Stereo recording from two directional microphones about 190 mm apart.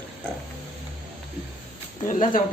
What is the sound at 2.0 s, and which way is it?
Speech, 40° left (ahead or behind).